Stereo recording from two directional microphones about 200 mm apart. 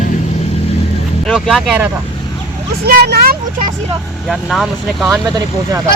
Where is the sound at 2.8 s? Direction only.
50° right (ahead or behind).